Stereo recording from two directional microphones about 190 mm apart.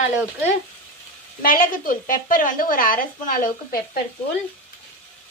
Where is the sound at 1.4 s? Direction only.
45° left (ahead or behind).